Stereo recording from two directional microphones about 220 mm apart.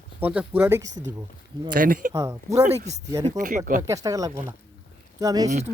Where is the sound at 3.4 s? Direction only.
35° right (ahead or behind).